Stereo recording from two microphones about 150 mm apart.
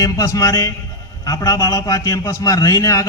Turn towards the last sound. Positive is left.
turn(degrees=20)  # may be behind; listen again after turning